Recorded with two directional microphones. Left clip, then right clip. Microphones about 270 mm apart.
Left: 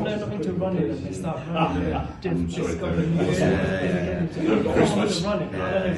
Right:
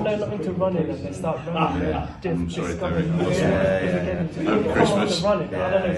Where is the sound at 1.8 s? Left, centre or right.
Right.